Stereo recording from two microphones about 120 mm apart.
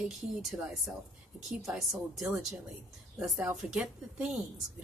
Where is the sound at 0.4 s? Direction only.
Centre (ahead or behind).